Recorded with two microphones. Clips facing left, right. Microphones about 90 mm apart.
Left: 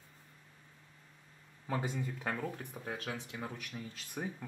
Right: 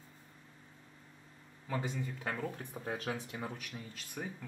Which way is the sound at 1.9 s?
10° left (ahead or behind).